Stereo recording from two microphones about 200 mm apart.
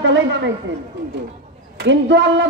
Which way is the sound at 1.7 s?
60° right (ahead or behind).